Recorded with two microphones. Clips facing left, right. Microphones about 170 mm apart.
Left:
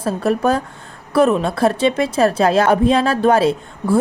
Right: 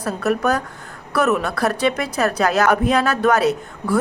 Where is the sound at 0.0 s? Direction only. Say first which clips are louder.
Left 3 dB; 30° left (ahead or behind).